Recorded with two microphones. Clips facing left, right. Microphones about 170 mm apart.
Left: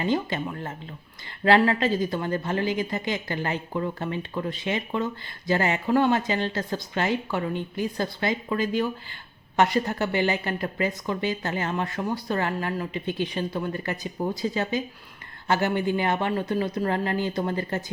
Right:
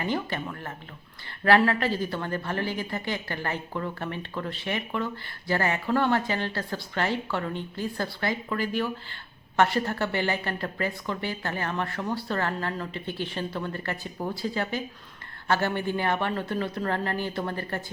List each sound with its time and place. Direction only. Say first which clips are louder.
0.0 s a woman's voice: left 4 dB; 20° left (ahead or behind)